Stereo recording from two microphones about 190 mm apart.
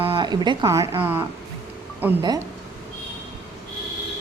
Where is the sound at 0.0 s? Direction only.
25° right (ahead or behind); by 2.2 s 10° right (ahead or behind).